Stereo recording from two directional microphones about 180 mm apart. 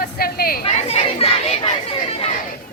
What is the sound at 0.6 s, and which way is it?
Speech, 35° left (ahead or behind).